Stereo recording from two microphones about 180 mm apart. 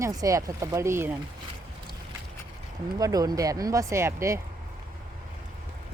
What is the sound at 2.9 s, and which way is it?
Speech, 20° right (ahead or behind).